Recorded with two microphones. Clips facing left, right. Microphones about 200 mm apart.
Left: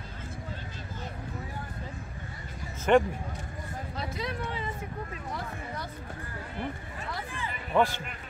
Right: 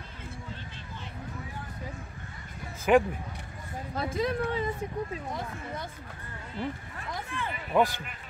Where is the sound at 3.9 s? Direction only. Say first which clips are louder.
Right 7 dB; 50° right (ahead or behind).